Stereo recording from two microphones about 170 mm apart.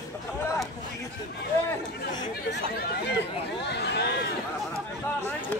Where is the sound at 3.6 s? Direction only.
85° left.